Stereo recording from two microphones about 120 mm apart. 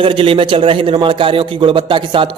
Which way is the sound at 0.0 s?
50° right (ahead or behind).